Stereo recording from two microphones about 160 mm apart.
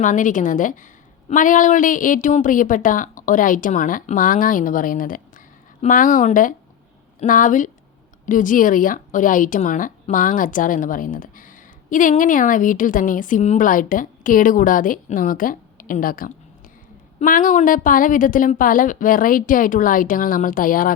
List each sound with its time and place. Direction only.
0.0 s a woman's voice: 55° left (ahead or behind)